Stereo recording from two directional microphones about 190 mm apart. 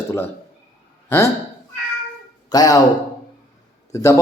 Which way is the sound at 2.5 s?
20° left (ahead or behind).